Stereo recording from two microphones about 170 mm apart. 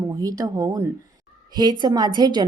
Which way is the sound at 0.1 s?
20° right (ahead or behind).